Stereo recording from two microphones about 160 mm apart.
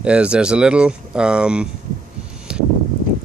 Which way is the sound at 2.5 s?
5° right (ahead or behind).